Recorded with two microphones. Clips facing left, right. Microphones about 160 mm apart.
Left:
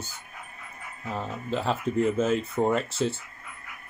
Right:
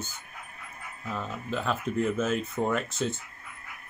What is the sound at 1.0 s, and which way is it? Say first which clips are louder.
Speech: left 2 dB; 30° left (ahead or behind).